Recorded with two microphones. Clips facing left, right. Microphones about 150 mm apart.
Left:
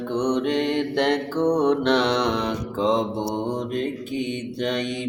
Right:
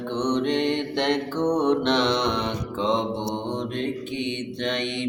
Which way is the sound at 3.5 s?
40° left (ahead or behind).